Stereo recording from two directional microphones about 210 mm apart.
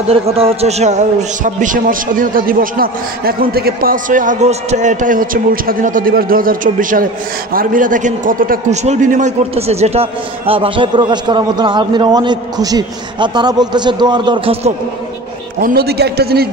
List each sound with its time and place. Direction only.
0.1 s a man's voice: 30° right (ahead or behind)
15.6 s a man's voice: 50° right (ahead or behind)